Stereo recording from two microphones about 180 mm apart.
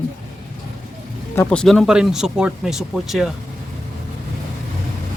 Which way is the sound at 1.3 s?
10° left (ahead or behind).